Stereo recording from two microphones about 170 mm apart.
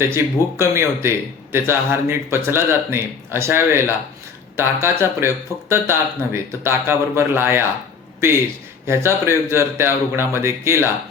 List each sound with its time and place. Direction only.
0.0 s speech: 15° right (ahead or behind)
8.9 s speech: 15° right (ahead or behind)